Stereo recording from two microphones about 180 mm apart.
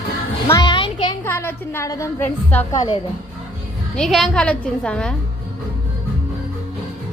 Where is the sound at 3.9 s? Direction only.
Centre (ahead or behind).